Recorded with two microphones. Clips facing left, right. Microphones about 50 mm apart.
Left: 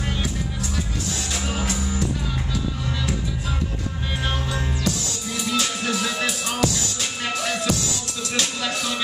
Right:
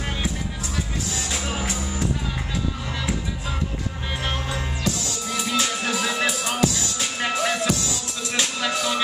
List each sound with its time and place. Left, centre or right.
1.5 s music: centre
4.5 s music: centre